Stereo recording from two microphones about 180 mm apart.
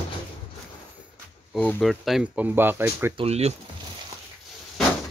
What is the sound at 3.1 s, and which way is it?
Speech, 35° right (ahead or behind).